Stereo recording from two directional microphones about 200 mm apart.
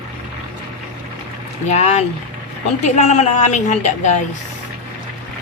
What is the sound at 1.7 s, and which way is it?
Speech, 35° left (ahead or behind).